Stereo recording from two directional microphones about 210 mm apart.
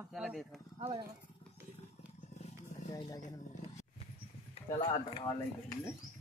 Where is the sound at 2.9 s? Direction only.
20° left (ahead or behind).